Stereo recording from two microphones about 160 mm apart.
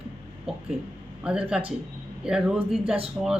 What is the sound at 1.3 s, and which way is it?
A man's voice, 5° right (ahead or behind).